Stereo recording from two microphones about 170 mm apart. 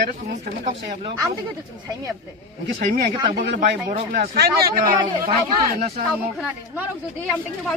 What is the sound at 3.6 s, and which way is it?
Speech, 55° right (ahead or behind).